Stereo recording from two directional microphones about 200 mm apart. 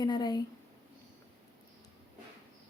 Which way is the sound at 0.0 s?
20° left (ahead or behind).